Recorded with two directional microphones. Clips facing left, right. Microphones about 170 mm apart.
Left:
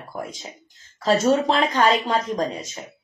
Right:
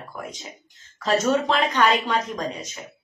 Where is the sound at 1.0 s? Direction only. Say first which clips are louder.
Left 3 dB; 30° left (ahead or behind).